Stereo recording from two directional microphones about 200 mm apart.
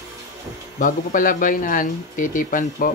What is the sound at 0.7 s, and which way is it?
Speech, 40° left (ahead or behind).